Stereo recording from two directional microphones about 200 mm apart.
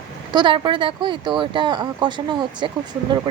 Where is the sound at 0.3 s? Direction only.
25° right (ahead or behind).